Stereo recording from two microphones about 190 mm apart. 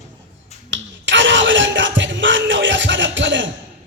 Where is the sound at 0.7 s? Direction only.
75° right (ahead or behind).